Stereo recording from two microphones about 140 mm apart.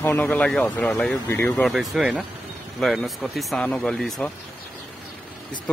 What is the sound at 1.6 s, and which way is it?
Speech, centre (ahead or behind).